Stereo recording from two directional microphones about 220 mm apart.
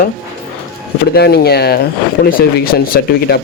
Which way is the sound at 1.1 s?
45° left (ahead or behind).